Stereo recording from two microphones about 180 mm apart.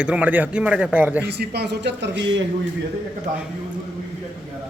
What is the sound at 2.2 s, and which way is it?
Speech, 90° right.